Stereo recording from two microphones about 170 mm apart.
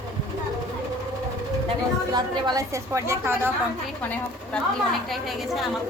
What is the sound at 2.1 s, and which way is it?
A woman's voice, 25° right (ahead or behind).